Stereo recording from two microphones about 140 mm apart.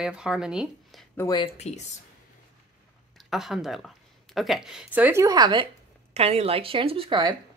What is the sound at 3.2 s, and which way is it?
Speech, 5° right (ahead or behind).